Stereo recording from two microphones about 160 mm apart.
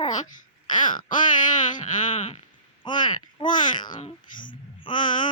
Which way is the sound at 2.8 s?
30° left (ahead or behind).